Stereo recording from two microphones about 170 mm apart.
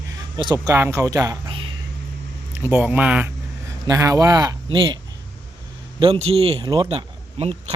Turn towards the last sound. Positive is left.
turn(degrees=-35)  # may be behind; listen again after turning